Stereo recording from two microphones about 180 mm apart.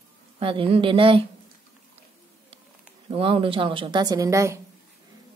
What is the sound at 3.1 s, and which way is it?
Speech, 30° right (ahead or behind).